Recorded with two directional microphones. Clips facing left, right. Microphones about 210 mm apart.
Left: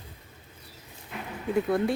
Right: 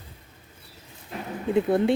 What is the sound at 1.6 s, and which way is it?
Speech, 25° right (ahead or behind).